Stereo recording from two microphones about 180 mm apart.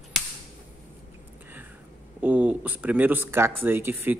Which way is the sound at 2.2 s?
10° right (ahead or behind).